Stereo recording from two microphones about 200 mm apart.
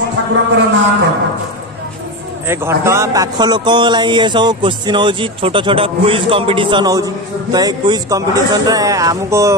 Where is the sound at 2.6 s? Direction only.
15° right (ahead or behind).